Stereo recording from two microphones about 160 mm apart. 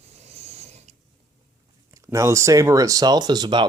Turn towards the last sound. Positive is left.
turn(degrees=-30)  # may be behind; listen again after turning